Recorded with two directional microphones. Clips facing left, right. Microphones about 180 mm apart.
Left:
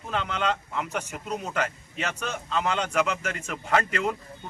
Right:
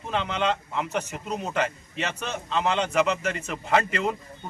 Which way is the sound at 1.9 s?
5° left (ahead or behind).